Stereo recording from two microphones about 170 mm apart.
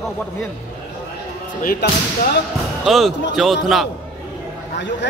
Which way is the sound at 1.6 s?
55° left (ahead or behind).